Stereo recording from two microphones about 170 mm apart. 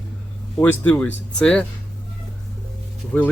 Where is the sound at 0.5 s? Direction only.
10° left (ahead or behind).